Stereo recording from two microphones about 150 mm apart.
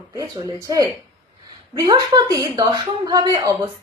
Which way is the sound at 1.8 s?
25° right (ahead or behind).